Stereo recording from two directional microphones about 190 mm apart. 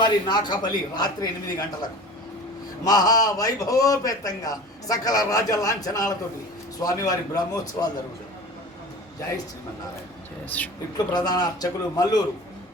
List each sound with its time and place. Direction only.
0.0 s a man's voice: 20° left (ahead or behind)
2.8 s a man's voice: 20° left (ahead or behind)
10.5 s speech: 10° left (ahead or behind)
10.9 s a man's voice: 20° left (ahead or behind)